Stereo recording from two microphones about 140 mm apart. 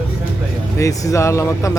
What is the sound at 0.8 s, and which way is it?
Speech, 25° left (ahead or behind).